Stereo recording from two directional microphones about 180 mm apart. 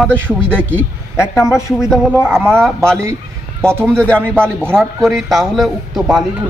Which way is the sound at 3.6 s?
15° right (ahead or behind).